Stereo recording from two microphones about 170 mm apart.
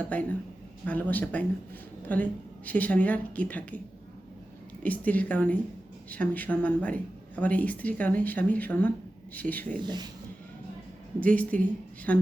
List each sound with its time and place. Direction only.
0.1 s speech: 10° left (ahead or behind)
4.8 s speech: 10° left (ahead or behind)
9.8 s speech: 25° right (ahead or behind)
11.2 s speech: 10° left (ahead or behind)